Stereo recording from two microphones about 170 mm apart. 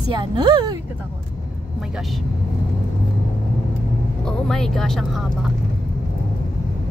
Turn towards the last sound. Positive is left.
turn(degrees=0)  # may be behind; listen again after turning